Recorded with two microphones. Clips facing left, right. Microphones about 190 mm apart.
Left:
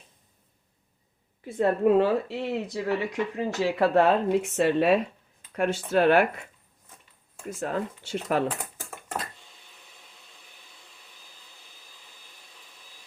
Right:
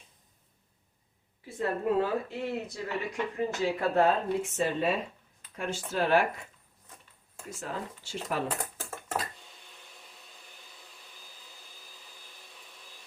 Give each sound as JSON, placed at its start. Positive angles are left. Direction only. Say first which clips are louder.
{"t": 1.5, "sound": "speech", "louder": "left 7 dB", "side_deg": 65}
{"t": 7.5, "sound": "speech", "louder": "left 8 dB", "side_deg": 60}
{"t": 9.1, "sound": "a sound", "louder": "even", "side_deg": 0}
{"t": 11.8, "sound": "vacuum cleaner", "louder": "right 1 dB", "side_deg": 0}